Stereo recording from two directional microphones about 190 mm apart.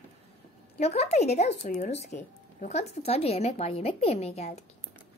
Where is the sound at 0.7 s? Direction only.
35° left (ahead or behind).